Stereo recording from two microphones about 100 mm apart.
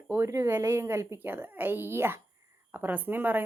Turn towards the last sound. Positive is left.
turn(degrees=-20)  # may be behind; listen again after turning